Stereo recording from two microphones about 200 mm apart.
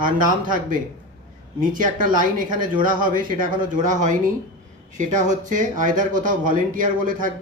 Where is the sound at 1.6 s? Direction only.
40° right (ahead or behind).